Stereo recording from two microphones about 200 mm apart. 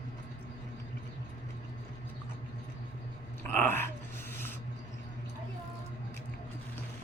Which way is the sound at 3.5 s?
10° left (ahead or behind).